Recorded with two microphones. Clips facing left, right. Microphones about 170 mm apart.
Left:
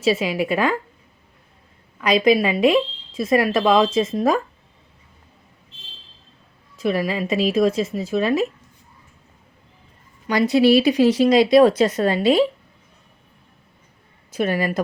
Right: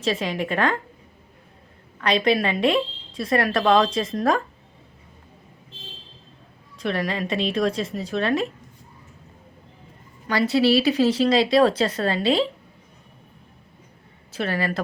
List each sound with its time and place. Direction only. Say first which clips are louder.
0.0 s a woman's voice: left 5 dB; 10° left (ahead or behind)
2.0 s a woman's voice: left 4 dB; 10° left (ahead or behind)
6.7 s a woman's voice: left 4 dB; 5° left (ahead or behind)
10.2 s a woman's voice: left 4 dB; 15° left (ahead or behind)
14.3 s a woman's voice: left 4 dB; 15° left (ahead or behind)